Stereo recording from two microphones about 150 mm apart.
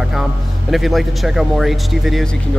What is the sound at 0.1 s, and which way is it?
Speech, centre (ahead or behind).